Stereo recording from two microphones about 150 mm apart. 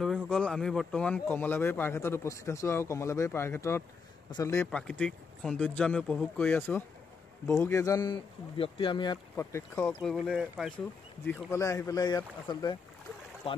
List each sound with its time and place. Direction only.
0.0 s a man's voice: 5° left (ahead or behind); by 4.6 s 20° left (ahead or behind)
4.6 s a man's voice: 5° left (ahead or behind); by 8.2 s 25° left (ahead or behind)
8.5 s speech: 35° left (ahead or behind)
9.4 s a man's voice: 15° left (ahead or behind)
10.0 s speech: centre (ahead or behind)
11.5 s speech: 20° left (ahead or behind); by 13.6 s 35° left (ahead or behind)